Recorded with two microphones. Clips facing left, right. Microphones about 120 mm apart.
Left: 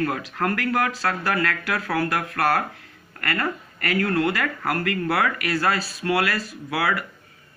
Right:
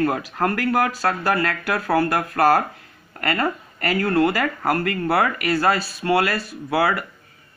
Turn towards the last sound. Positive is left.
turn(degrees=-25)  # may be behind; listen again after turning